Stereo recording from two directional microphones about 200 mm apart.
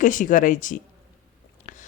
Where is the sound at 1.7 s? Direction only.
35° left (ahead or behind).